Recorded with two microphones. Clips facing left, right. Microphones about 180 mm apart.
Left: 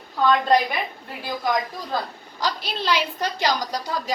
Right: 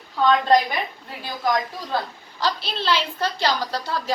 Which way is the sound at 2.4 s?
10° left (ahead or behind).